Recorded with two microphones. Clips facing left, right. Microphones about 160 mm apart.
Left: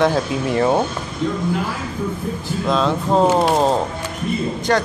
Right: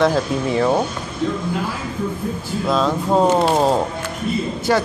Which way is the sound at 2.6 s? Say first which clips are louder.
Even; 5° right (ahead or behind).